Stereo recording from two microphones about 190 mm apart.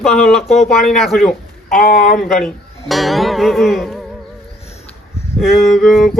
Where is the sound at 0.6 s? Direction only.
Centre (ahead or behind).